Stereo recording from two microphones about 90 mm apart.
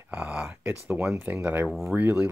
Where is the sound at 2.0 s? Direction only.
20° right (ahead or behind).